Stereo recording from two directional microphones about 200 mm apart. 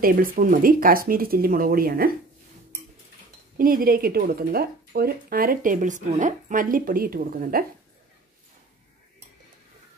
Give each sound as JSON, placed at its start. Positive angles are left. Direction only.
{"t": 0.0, "sound": "speech", "side_deg": -45}
{"t": 3.5, "sound": "speech", "side_deg": -45}